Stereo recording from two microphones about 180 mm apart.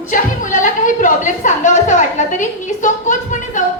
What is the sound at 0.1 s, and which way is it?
A woman's voice, 45° left (ahead or behind).